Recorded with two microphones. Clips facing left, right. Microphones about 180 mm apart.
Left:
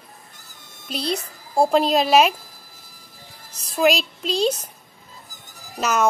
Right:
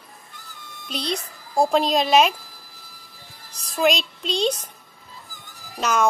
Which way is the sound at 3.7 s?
Centre (ahead or behind).